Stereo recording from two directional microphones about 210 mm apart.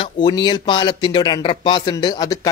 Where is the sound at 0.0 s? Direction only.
20° left (ahead or behind).